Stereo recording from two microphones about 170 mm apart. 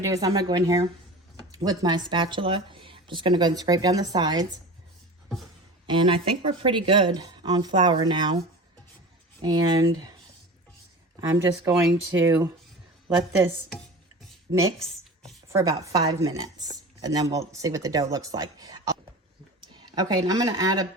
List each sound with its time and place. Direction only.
0.0 s speech: 20° right (ahead or behind)
5.8 s speech: 30° right (ahead or behind)
9.4 s speech: 25° right (ahead or behind)
11.2 s speech: 15° right (ahead or behind)
13.7 s music: centre (ahead or behind)
15.5 s speech: 20° right (ahead or behind)